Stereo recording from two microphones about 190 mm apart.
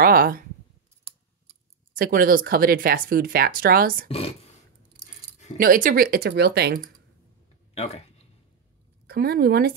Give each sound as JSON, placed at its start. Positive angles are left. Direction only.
{"t": 0.0, "sound": "a sound", "side_deg": -50}
{"t": 2.0, "sound": "speech", "side_deg": -50}
{"t": 5.6, "sound": "speech", "side_deg": -45}
{"t": 9.0, "sound": "speech", "side_deg": -55}